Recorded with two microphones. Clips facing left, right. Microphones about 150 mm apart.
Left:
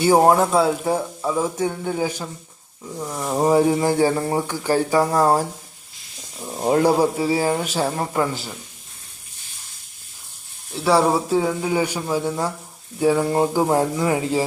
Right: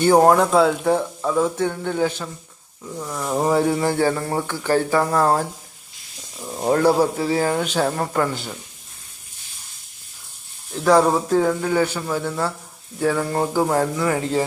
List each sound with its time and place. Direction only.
0.0 s speech: 5° left (ahead or behind)
6.4 s speech: 10° left (ahead or behind)
10.8 s speech: 5° left (ahead or behind)